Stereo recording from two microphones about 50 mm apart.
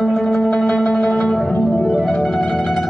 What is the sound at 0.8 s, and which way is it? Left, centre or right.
Music, centre.